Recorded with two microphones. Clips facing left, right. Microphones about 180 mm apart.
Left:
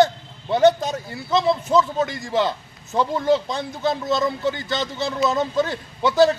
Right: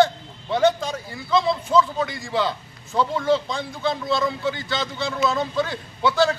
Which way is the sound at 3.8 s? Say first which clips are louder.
Left 2 dB; 45° left (ahead or behind).